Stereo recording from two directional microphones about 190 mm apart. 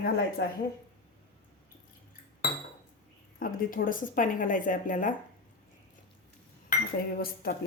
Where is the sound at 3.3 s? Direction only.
45° left (ahead or behind).